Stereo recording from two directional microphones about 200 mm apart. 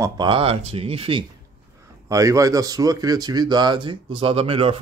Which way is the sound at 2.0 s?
15° right (ahead or behind).